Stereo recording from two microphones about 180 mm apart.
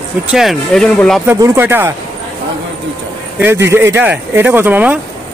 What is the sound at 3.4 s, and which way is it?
Speech, 15° right (ahead or behind).